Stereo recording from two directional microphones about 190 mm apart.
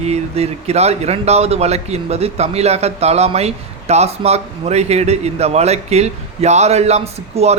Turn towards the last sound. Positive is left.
turn(degrees=-35)  # may be behind; listen again after turning